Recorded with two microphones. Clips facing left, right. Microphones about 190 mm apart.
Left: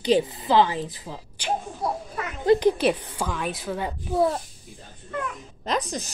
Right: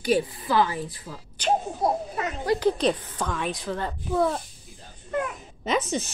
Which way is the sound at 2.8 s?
10° left (ahead or behind).